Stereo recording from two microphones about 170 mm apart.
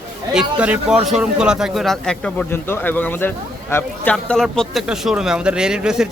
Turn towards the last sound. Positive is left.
turn(degrees=-5)  # may be behind; listen again after turning